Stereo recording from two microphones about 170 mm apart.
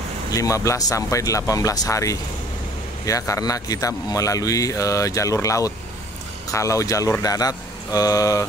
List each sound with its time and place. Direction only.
0.3 s a man's voice: 20° left (ahead or behind)